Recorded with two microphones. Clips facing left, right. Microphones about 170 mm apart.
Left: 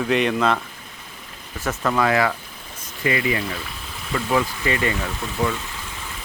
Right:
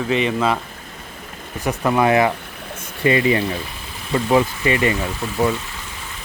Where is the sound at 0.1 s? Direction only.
Centre (ahead or behind).